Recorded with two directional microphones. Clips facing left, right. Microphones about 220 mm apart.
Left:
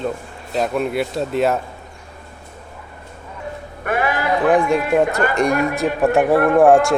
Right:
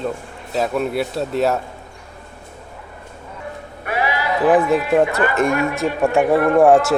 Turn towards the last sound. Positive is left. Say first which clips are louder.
# even
turn(degrees=0)  # may be behind; listen again after turning